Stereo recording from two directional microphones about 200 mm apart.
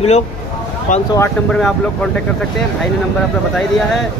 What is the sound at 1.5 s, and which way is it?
Speech, 5° left (ahead or behind).